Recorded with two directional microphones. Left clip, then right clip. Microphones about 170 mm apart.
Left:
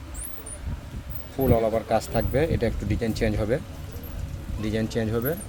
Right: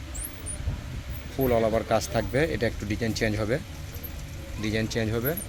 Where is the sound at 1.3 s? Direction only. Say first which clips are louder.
Left 1 dB; centre (ahead or behind).